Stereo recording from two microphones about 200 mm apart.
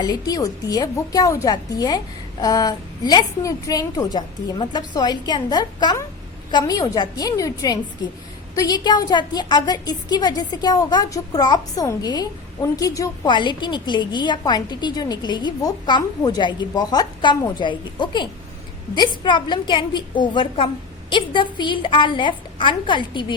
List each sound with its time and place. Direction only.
0.0 s a woman's voice: 20° left (ahead or behind)